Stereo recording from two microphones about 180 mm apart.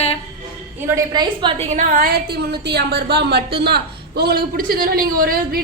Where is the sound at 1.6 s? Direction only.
45° right (ahead or behind).